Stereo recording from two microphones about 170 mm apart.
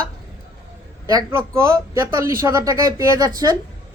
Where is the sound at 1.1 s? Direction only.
15° right (ahead or behind).